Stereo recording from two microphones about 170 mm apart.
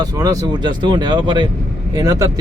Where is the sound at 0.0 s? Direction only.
20° right (ahead or behind).